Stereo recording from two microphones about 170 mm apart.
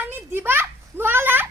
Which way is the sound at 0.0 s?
10° right (ahead or behind).